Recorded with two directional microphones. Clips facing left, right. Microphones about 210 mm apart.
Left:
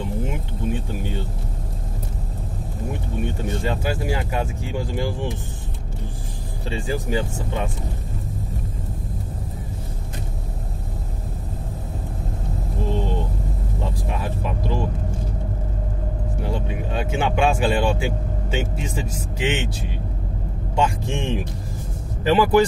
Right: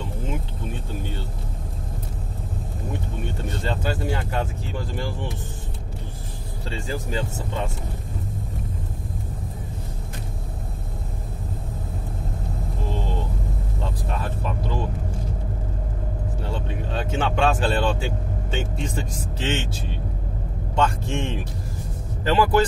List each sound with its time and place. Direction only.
0.3 s vehicle: 15° left (ahead or behind)
3.6 s speech: 10° left (ahead or behind)
6.7 s speech: 15° left (ahead or behind)
14.0 s a sound: 15° left (ahead or behind)
16.4 s speech: 10° left (ahead or behind)